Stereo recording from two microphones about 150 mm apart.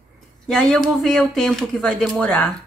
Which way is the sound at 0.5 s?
5° left (ahead or behind).